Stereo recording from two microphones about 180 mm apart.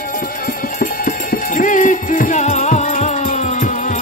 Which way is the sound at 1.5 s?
45° left (ahead or behind).